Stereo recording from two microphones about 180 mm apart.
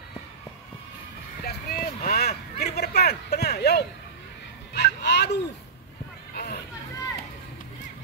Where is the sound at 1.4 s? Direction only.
55° left (ahead or behind).